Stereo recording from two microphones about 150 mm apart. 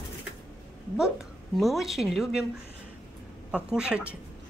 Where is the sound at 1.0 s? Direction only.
Centre (ahead or behind).